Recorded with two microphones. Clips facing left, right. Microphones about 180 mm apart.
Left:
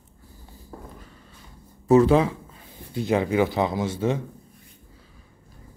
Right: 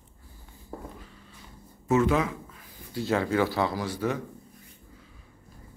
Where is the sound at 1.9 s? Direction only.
35° left (ahead or behind).